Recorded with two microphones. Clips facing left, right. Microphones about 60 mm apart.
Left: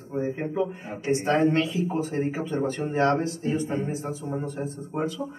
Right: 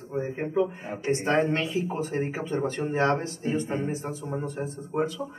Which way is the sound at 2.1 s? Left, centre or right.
Centre.